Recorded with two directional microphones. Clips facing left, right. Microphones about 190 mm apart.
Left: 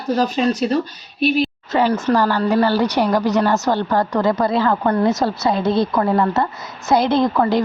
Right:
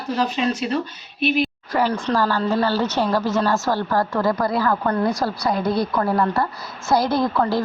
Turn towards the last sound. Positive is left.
turn(degrees=20)  # may be behind; listen again after turning